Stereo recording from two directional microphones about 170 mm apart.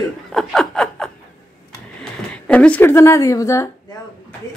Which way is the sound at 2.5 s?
10° left (ahead or behind).